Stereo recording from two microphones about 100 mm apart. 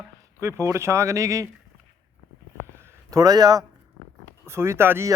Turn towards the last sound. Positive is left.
turn(degrees=-25)  # may be behind; listen again after turning